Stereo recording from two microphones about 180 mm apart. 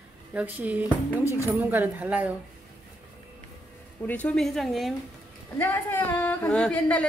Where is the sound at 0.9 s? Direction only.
15° left (ahead or behind).